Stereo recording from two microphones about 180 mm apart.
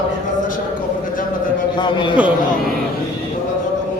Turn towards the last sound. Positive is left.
turn(degrees=25)  # may be behind; listen again after turning